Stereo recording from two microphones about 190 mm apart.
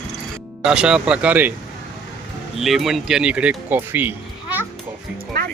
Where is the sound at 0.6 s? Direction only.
5° right (ahead or behind).